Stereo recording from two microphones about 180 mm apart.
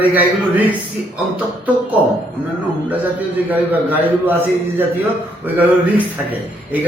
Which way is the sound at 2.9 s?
10° right (ahead or behind).